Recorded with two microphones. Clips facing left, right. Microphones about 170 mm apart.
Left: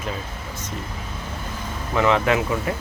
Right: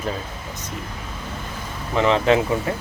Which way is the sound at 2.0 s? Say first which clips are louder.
Right 2 dB; 25° right (ahead or behind).